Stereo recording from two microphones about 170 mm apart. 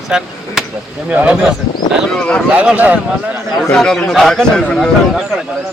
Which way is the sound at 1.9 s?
5° left (ahead or behind).